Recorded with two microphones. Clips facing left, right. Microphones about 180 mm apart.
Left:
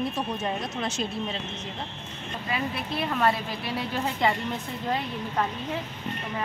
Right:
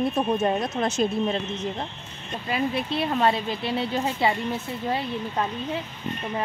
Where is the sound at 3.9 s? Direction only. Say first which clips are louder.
Left 1 dB; 15° right (ahead or behind).